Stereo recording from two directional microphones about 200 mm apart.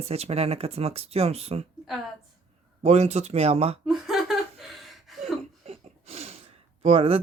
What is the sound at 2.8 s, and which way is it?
Speech, 30° right (ahead or behind).